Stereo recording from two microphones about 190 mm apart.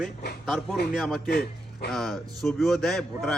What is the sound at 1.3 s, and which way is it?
Speech, 55° left (ahead or behind).